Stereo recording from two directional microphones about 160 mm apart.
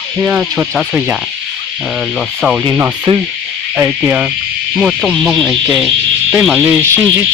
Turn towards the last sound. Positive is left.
turn(degrees=-15)  # may be behind; listen again after turning